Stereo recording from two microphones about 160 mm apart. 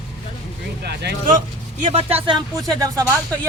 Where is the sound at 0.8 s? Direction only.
90° right.